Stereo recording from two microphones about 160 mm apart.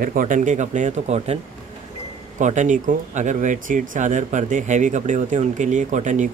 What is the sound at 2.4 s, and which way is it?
Speech, 50° right (ahead or behind).